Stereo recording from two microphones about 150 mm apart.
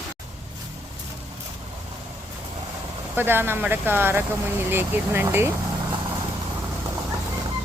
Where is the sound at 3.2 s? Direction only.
15° right (ahead or behind).